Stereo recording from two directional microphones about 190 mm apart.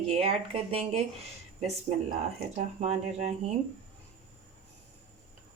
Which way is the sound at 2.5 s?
35° right (ahead or behind).